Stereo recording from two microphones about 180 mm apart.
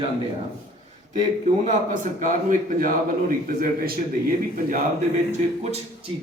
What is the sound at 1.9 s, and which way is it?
A man's voice, 45° right (ahead or behind).